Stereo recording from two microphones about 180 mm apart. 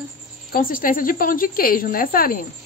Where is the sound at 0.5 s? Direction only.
50° left (ahead or behind).